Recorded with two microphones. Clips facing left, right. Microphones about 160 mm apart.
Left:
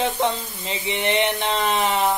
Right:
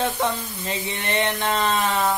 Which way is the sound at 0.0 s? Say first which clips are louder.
Left 2 dB; 20° left (ahead or behind).